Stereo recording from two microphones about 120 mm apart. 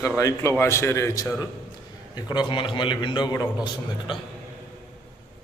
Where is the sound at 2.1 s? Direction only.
35° left (ahead or behind).